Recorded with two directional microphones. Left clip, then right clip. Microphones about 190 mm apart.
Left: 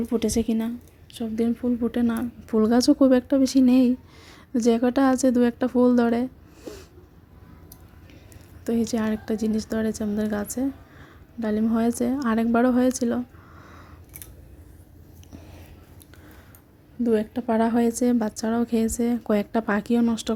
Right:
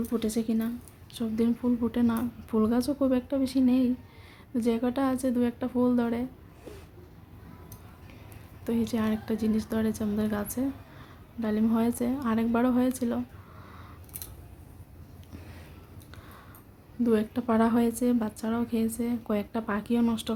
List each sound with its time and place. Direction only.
0.1 s a woman's voice: 30° left (ahead or behind)
1.1 s speech: 15° left (ahead or behind)
2.6 s speech: 40° left (ahead or behind)
6.7 s cat: 30° left (ahead or behind)
8.6 s a woman's voice: 25° left (ahead or behind)
17.0 s speech: 15° left (ahead or behind)
18.0 s speech: 30° left (ahead or behind)
20.0 s a woman's voice: 25° left (ahead or behind)